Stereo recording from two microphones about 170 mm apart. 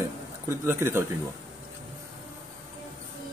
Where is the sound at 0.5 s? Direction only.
15° right (ahead or behind).